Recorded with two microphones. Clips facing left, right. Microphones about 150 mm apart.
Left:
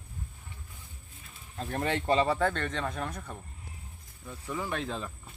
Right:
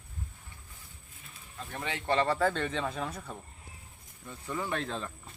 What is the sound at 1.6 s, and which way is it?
Speech, 40° left (ahead or behind).